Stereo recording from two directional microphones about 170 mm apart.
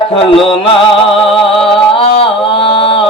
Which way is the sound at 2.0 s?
30° left (ahead or behind).